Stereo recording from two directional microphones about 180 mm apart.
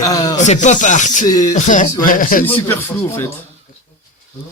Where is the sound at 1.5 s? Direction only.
45° left (ahead or behind).